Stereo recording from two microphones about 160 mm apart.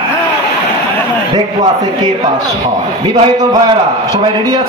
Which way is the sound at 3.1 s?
25° right (ahead or behind).